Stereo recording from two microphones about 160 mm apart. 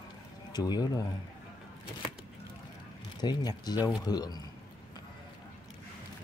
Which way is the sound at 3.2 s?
25° left (ahead or behind).